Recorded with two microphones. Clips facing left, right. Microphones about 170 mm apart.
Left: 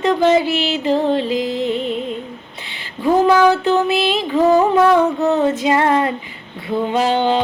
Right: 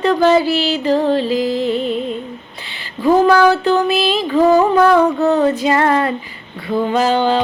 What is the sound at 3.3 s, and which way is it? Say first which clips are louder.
Female singing: right 1 dB; 20° left (ahead or behind).